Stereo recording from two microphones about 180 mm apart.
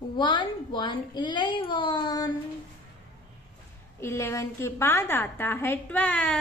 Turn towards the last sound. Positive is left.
turn(degrees=10)  # may be behind; listen again after turning